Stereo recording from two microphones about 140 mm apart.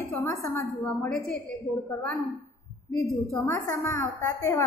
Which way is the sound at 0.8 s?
10° left (ahead or behind).